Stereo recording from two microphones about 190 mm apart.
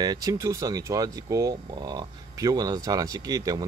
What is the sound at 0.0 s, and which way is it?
Speech, 20° right (ahead or behind).